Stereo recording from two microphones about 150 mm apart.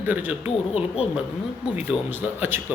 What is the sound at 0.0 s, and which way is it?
Speech, 10° right (ahead or behind).